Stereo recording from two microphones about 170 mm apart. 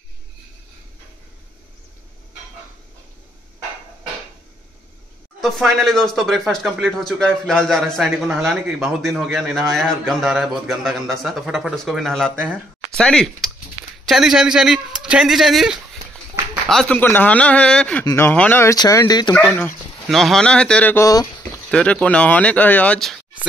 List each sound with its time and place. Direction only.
5.4 s speech: centre (ahead or behind); by 19.3 s 25° left (ahead or behind)
19.3 s speech: 10° left (ahead or behind)
21.6 s speech: 5° left (ahead or behind)